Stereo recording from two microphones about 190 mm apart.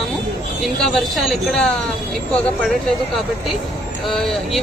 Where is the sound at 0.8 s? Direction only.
Centre (ahead or behind).